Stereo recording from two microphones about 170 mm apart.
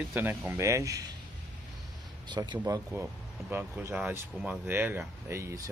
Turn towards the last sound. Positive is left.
turn(degrees=-15)  # may be behind; listen again after turning